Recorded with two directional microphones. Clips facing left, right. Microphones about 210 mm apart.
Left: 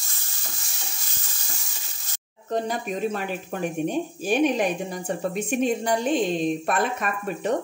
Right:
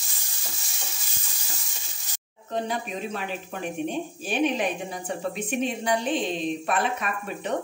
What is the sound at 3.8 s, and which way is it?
Speech, 45° left (ahead or behind).